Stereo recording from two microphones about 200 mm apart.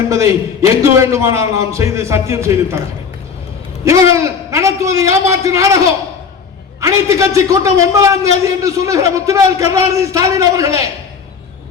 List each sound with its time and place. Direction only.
0.1 s a man's voice: 15° right (ahead or behind)
3.8 s a man's voice: 15° right (ahead or behind)